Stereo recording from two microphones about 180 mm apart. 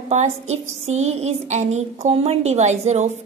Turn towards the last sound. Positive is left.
turn(degrees=-40)  # may be behind; listen again after turning